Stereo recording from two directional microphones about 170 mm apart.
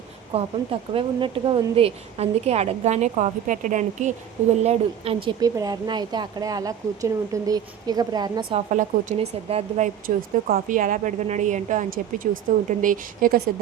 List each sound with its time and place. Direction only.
0.3 s speech: 35° right (ahead or behind)
5.4 s speech: 20° right (ahead or behind)
8.7 s a woman's voice: 45° right (ahead or behind)
10.4 s a woman's voice: 50° right (ahead or behind)